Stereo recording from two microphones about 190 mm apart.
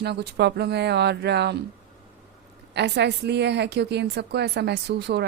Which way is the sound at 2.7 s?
65° right (ahead or behind).